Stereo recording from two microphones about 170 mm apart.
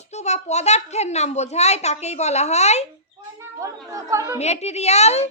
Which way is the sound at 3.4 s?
20° right (ahead or behind).